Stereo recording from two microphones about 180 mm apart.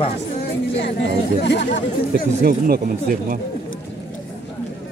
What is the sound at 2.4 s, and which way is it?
Speech, 55° right (ahead or behind).